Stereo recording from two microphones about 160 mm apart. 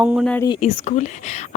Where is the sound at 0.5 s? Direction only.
40° left (ahead or behind).